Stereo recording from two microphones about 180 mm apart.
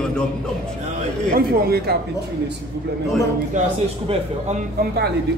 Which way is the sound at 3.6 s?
45° right (ahead or behind).